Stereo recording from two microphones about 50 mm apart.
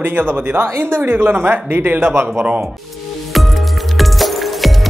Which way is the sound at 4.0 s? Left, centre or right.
Centre.